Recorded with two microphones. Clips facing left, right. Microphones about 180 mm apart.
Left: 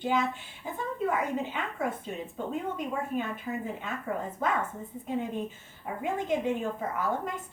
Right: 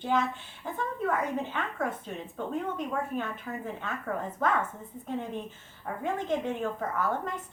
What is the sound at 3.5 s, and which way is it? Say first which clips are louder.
Speech: left 3 dB; 10° left (ahead or behind).